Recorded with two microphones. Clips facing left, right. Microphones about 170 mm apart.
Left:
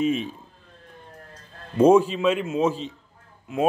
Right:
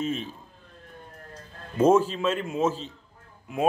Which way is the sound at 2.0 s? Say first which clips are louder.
Left 4 dB; 10° left (ahead or behind).